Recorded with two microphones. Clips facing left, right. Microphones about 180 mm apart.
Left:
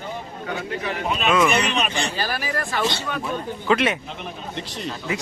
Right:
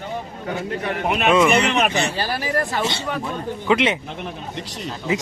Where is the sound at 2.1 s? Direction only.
35° right (ahead or behind).